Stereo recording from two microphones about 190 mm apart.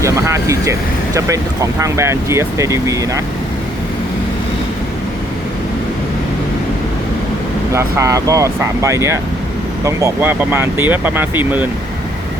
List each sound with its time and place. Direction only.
0.0 s speech: 15° right (ahead or behind)
7.7 s speech: 15° right (ahead or behind)